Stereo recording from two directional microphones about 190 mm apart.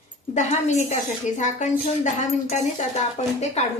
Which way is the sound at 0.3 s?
35° left (ahead or behind).